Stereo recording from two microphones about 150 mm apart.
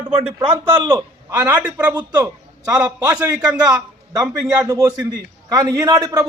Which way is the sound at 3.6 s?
25° right (ahead or behind).